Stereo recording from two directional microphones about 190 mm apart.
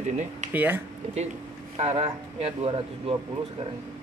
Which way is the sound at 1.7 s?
35° right (ahead or behind).